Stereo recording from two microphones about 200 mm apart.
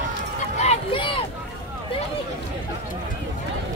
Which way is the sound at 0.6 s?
30° left (ahead or behind).